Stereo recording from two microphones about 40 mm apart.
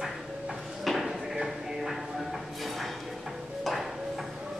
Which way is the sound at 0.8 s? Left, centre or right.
Centre.